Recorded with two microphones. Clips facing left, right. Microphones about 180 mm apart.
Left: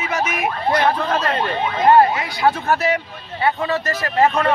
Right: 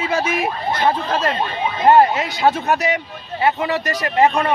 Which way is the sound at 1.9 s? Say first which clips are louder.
Right 1 dB; 25° right (ahead or behind).